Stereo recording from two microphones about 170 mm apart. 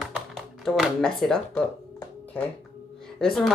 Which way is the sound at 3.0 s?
Centre (ahead or behind).